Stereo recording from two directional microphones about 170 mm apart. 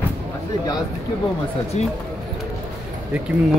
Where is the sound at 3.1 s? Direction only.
5° right (ahead or behind).